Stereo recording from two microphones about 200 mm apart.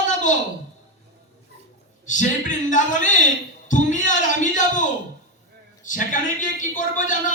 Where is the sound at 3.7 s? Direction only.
40° left (ahead or behind).